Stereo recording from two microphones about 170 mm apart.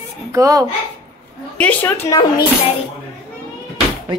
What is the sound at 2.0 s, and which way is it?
Speech, 25° left (ahead or behind).